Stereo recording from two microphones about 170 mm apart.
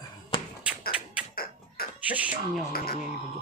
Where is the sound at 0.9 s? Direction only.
5° right (ahead or behind).